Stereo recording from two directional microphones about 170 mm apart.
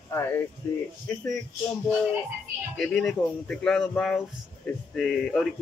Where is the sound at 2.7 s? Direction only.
Centre (ahead or behind).